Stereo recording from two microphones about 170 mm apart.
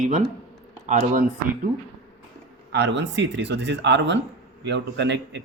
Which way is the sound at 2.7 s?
90° right.